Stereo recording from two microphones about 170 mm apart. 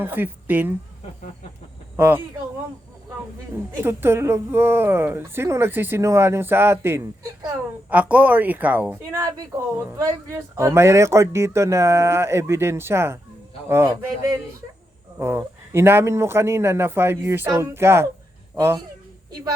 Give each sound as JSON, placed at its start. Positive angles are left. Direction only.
{"t": 0.0, "sound": "a woman's voice", "side_deg": -10}
{"t": 2.0, "sound": "a woman's voice", "side_deg": -10}
{"t": 3.8, "sound": "a woman's voice", "side_deg": -15}